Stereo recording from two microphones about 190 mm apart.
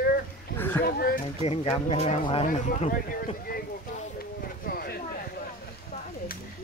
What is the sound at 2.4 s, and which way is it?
Speech, 40° left (ahead or behind).